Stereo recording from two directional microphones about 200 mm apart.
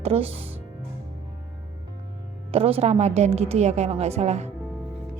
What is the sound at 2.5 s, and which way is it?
A woman's voice, 30° right (ahead or behind).